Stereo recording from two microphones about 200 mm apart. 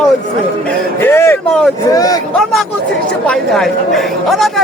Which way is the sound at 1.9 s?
15° left (ahead or behind).